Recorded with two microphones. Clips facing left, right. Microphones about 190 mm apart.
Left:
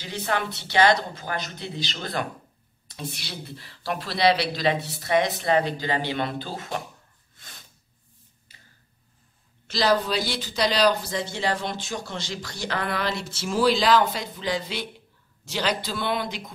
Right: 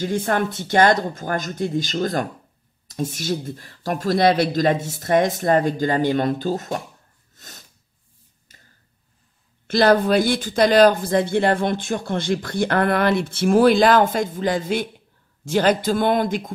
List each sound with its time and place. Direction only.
0.0 s speech: 50° right (ahead or behind)
7.3 s sneeze: 45° right (ahead or behind)
8.5 s a sound: 45° right (ahead or behind)
9.7 s speech: 55° right (ahead or behind)